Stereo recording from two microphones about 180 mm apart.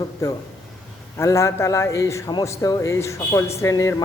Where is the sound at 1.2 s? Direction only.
15° left (ahead or behind).